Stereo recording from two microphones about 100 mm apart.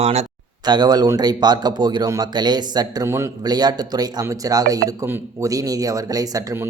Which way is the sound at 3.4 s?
45° right (ahead or behind).